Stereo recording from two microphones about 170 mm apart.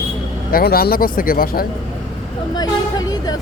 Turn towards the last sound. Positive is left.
turn(degrees=25)  # may be behind; listen again after turning